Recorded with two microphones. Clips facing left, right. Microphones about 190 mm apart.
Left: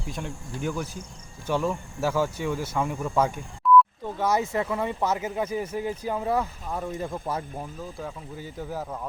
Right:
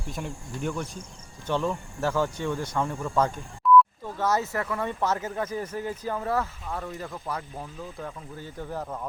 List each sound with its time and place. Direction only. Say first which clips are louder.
0.1 s speech: even; centre (ahead or behind)
3.6 s a sound: even; centre (ahead or behind)
4.0 s speech: left 1 dB; 15° left (ahead or behind)
6.9 s speech: left 4 dB; 25° left (ahead or behind)
7.5 s speech: left 2 dB; 10° left (ahead or behind)